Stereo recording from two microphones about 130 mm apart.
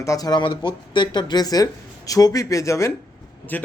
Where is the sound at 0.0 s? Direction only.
25° left (ahead or behind).